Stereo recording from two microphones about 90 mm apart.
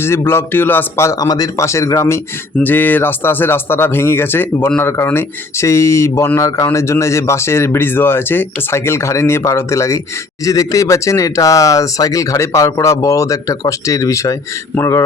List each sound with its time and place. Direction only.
0.0 s speech: 30° left (ahead or behind)
2.6 s speech: 20° left (ahead or behind)